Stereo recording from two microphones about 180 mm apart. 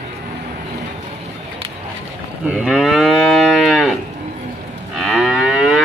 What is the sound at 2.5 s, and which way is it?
Moo, centre (ahead or behind).